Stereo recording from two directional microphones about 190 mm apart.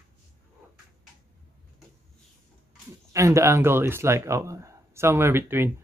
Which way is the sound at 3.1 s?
15° right (ahead or behind).